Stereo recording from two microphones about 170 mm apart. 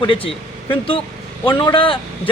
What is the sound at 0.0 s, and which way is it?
A man's voice, 30° left (ahead or behind).